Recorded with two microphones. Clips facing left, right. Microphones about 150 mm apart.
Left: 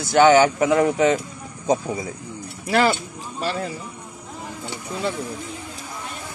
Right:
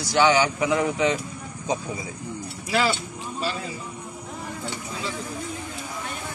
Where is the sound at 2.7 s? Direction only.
55° left (ahead or behind).